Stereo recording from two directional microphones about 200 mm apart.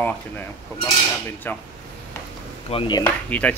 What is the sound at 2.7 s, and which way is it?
Speech, 25° left (ahead or behind).